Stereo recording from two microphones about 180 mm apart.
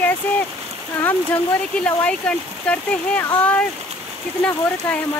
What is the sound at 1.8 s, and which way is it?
Speech, 5° left (ahead or behind).